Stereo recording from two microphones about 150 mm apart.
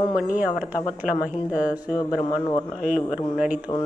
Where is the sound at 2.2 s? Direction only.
30° left (ahead or behind).